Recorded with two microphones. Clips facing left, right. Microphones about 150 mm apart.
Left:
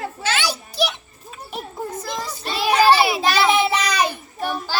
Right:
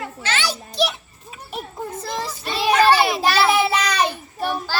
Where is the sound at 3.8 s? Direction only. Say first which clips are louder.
Even; 10° left (ahead or behind).